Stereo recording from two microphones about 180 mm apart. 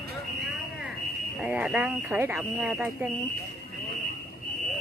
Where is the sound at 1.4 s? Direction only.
5° right (ahead or behind).